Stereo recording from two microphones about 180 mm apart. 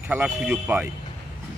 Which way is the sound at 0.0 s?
10° right (ahead or behind).